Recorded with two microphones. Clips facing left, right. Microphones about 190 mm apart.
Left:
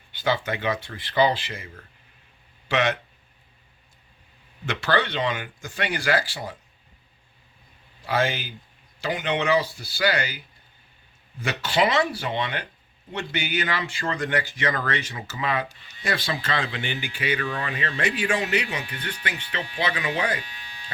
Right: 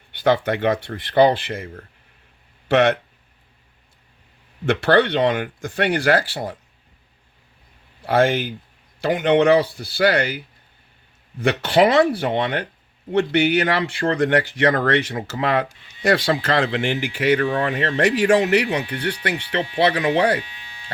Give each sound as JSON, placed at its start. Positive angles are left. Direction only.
{"t": 0.1, "sound": "speech", "side_deg": -65}
{"t": 4.6, "sound": "speech", "side_deg": -60}
{"t": 8.0, "sound": "speech", "side_deg": -60}